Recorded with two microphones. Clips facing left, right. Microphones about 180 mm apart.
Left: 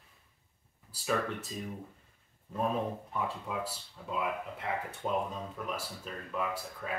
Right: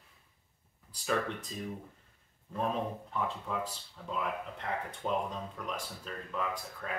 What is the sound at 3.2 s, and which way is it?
Speech, 10° left (ahead or behind).